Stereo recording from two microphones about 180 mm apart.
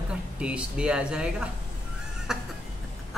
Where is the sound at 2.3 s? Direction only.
5° right (ahead or behind).